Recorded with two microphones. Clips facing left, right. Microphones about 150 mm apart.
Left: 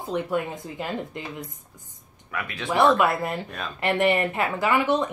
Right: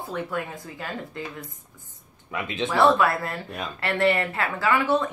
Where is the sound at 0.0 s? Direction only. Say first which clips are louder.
Left 4 dB; 20° left (ahead or behind).